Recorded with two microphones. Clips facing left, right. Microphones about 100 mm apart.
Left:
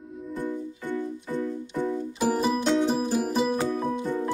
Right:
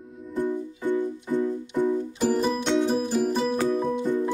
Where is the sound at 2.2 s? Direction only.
5° left (ahead or behind).